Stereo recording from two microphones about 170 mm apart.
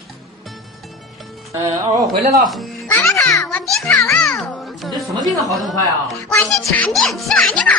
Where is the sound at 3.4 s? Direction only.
Centre (ahead or behind).